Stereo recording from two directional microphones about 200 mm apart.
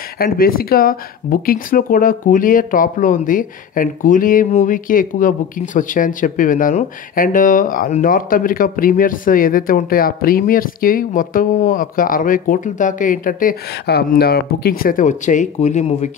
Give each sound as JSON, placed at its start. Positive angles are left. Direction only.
{"t": 0.2, "sound": "speech", "side_deg": 50}